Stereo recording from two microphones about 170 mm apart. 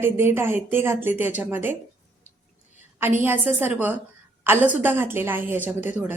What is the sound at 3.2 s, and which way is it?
A woman's voice, 10° right (ahead or behind).